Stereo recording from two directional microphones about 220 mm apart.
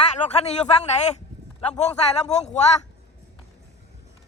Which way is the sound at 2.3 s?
30° left (ahead or behind).